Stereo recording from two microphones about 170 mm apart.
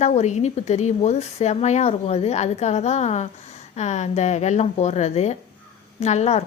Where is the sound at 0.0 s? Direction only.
40° left (ahead or behind).